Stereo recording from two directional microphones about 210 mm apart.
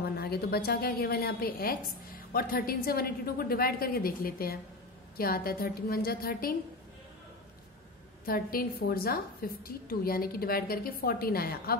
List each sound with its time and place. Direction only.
0.1 s a woman's voice: 50° left (ahead or behind)
8.3 s a woman's voice: 45° left (ahead or behind)